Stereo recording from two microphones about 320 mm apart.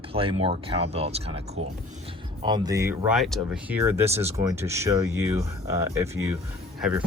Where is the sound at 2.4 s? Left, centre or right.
Centre.